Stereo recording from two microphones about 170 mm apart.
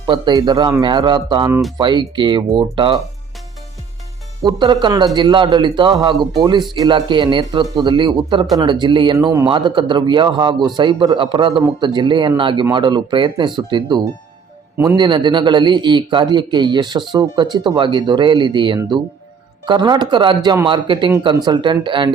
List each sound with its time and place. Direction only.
0.0 s a man's voice: 25° right (ahead or behind)
4.4 s a man's voice: 25° right (ahead or behind)
9.1 s speech: 15° right (ahead or behind)
9.5 s a man's voice: 25° right (ahead or behind)